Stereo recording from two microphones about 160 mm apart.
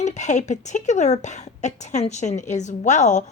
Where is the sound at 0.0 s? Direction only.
45° left (ahead or behind).